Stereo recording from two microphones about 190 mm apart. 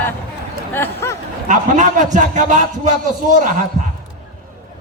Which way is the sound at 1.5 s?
40° right (ahead or behind).